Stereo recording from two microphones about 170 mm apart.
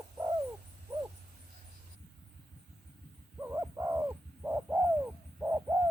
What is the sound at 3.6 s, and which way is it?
Bird, 20° right (ahead or behind).